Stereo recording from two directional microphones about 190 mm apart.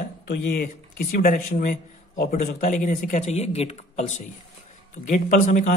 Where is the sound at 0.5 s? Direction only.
45° left (ahead or behind).